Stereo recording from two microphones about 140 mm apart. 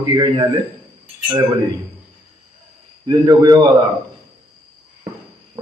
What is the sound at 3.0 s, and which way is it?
Speech, 30° right (ahead or behind).